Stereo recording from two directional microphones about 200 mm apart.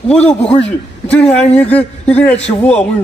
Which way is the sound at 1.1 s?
5° left (ahead or behind).